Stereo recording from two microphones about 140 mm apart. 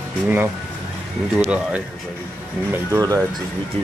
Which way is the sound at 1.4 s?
5° right (ahead or behind).